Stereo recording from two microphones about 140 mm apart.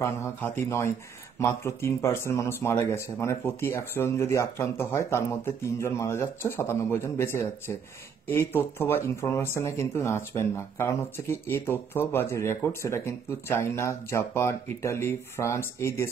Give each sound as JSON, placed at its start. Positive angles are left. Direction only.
{"t": 0.0, "sound": "speech", "side_deg": 20}